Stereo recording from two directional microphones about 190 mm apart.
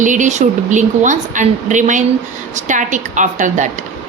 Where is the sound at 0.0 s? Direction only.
40° right (ahead or behind).